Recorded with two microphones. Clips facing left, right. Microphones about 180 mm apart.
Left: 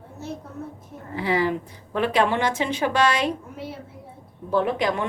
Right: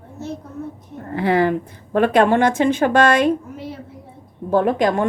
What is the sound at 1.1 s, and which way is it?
A woman's voice, 55° right (ahead or behind).